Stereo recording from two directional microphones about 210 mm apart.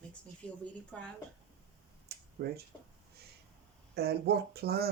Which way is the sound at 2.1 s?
50° right (ahead or behind).